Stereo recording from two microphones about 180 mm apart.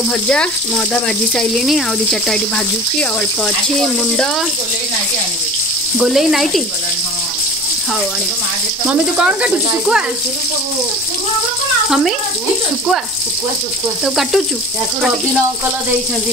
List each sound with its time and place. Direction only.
0.3 s speech: 5° left (ahead or behind)
5.9 s speech: centre (ahead or behind)
8.8 s speech: 5° right (ahead or behind)
14.0 s speech: centre (ahead or behind)